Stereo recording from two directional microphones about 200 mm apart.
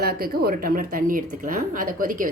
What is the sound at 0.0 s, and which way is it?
A woman's voice, 50° right (ahead or behind).